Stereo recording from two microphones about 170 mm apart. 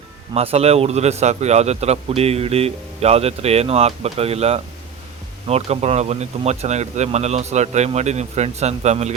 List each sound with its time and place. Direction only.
0.3 s a man's voice: 35° right (ahead or behind)